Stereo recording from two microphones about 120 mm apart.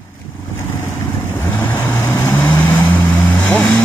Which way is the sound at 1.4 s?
15° left (ahead or behind).